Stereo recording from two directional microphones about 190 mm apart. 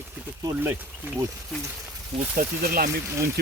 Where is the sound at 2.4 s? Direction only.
50° right (ahead or behind).